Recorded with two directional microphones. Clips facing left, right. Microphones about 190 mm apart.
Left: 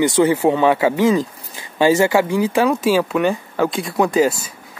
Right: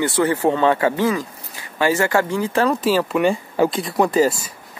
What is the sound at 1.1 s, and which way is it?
Speech, 25° left (ahead or behind).